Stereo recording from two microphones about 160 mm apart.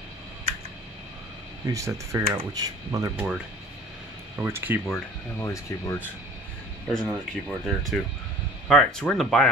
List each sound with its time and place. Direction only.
1.7 s speech: 20° right (ahead or behind)
3.2 s speech: 5° right (ahead or behind)
5.4 s speech: 20° left (ahead or behind)
6.9 s speech: centre (ahead or behind)